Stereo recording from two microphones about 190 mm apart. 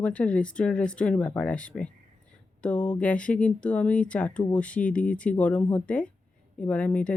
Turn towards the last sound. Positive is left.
turn(degrees=5)  # may be behind; listen again after turning